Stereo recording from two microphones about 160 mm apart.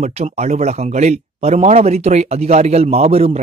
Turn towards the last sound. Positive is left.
turn(degrees=-40)  # may be behind; listen again after turning